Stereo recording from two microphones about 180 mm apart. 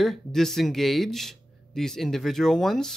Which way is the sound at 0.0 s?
Centre (ahead or behind).